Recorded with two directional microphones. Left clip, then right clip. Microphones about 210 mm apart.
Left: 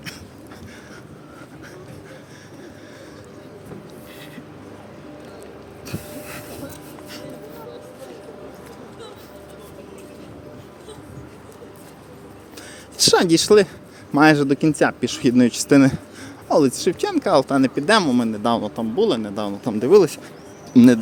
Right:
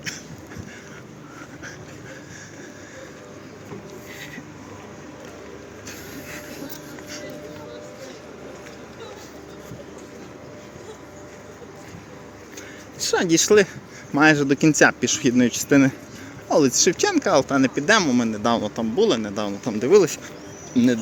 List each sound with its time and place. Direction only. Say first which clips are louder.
5.9 s vehicle: left 3 dB; 20° left (ahead or behind)
13.0 s speech: left 5 dB; 25° left (ahead or behind); by 17.3 s 5° left (ahead or behind)
17.3 s speech: left 2 dB; 15° left (ahead or behind)
20.7 s speech: left 7 dB; 30° left (ahead or behind)